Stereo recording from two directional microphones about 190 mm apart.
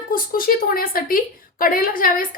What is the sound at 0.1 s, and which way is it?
A woman's voice, 50° left (ahead or behind).